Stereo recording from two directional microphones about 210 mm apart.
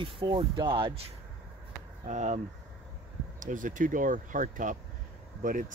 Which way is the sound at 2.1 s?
35° right (ahead or behind).